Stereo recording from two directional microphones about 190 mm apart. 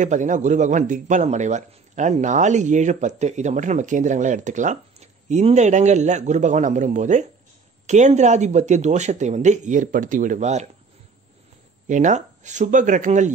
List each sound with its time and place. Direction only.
0.0 s speech: 40° right (ahead or behind)
11.9 s speech: 40° right (ahead or behind)